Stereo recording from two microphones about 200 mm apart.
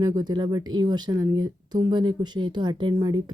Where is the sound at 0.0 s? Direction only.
20° right (ahead or behind).